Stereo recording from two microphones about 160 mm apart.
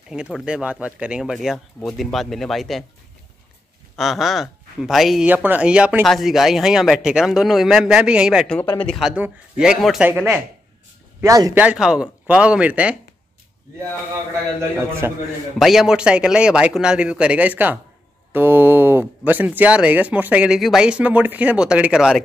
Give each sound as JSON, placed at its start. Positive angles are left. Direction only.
{"t": 0.1, "sound": "speech", "side_deg": -5}
{"t": 3.9, "sound": "speech", "side_deg": 0}
{"t": 9.1, "sound": "speech", "side_deg": -5}
{"t": 11.1, "sound": "speech", "side_deg": -20}
{"t": 11.5, "sound": "speech", "side_deg": -5}
{"t": 14.8, "sound": "speech", "side_deg": -15}
{"t": 15.6, "sound": "speech", "side_deg": 0}